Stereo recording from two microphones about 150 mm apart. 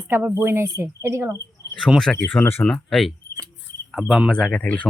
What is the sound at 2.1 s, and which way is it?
Speech, 10° left (ahead or behind).